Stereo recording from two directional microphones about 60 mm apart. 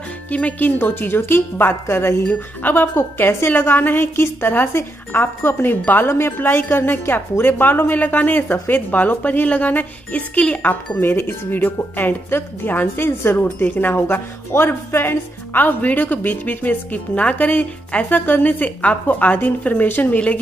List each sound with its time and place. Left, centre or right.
0.3 s speech: left
2.2 s speech: left
3.0 s speech: left